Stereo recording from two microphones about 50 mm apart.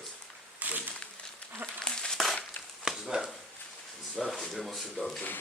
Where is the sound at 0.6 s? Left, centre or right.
Right.